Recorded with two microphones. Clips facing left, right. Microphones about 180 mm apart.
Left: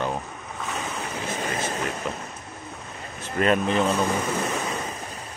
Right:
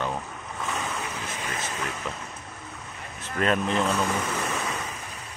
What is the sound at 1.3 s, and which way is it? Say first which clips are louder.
Vehicle: left 5 dB; 35° left (ahead or behind).